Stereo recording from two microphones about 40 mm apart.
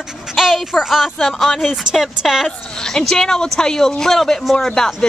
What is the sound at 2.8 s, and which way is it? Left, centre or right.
Speech, centre.